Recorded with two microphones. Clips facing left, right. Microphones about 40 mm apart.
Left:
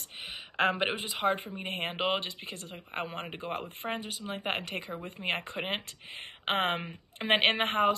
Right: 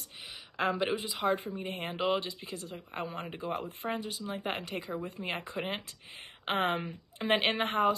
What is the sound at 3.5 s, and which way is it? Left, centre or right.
Speech, left.